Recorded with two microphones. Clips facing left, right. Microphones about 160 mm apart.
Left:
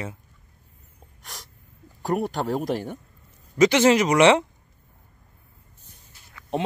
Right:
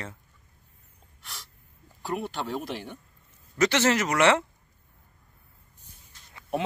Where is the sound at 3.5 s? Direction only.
15° left (ahead or behind).